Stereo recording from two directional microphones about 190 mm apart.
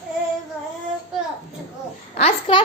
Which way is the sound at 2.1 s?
35° left (ahead or behind).